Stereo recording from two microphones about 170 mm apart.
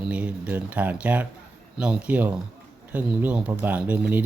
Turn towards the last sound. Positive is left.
turn(degrees=-10)  # may be behind; listen again after turning